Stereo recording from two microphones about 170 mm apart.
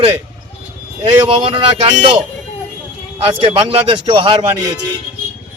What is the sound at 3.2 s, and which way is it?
Speech, 30° right (ahead or behind).